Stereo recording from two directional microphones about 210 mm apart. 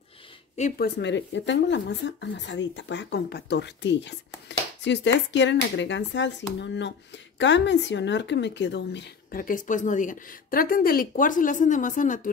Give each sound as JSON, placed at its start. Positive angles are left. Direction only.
{"t": 0.6, "sound": "speech", "side_deg": 40}